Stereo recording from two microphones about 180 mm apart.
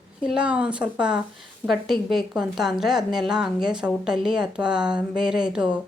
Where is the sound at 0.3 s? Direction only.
5° right (ahead or behind).